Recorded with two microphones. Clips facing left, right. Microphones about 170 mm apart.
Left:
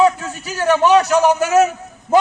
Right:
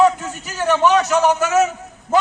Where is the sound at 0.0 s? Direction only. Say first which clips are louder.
Even; 10° left (ahead or behind).